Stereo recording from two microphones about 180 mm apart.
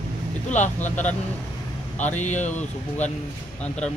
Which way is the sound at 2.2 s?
40° left (ahead or behind).